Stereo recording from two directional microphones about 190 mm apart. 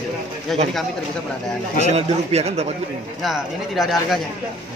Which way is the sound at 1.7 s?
35° right (ahead or behind).